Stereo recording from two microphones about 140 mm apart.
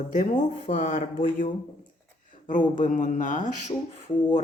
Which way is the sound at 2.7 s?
65° left (ahead or behind).